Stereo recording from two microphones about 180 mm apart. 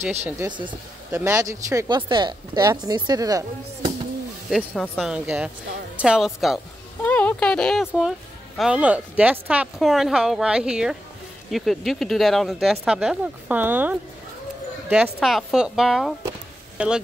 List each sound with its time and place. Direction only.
0.4 s speech: 25° right (ahead or behind)
4.5 s a woman's voice: centre (ahead or behind)
7.0 s a woman's voice: 10° left (ahead or behind); by 13.9 s 10° right (ahead or behind)
15.1 s a woman's voice: centre (ahead or behind)